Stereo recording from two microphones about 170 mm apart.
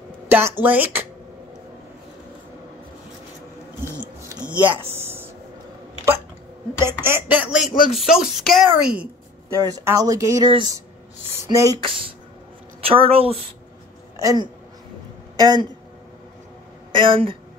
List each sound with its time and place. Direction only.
0.3 s speech: 15° right (ahead or behind)
4.8 s a sound: 15° right (ahead or behind)
6.9 s speech: 15° right (ahead or behind)
12.8 s a woman's voice: 35° right (ahead or behind)
14.1 s speech: 20° right (ahead or behind)
16.9 s a woman's voice: 30° right (ahead or behind)